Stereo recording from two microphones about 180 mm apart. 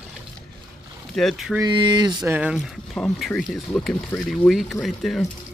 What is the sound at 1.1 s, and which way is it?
Speech, centre (ahead or behind).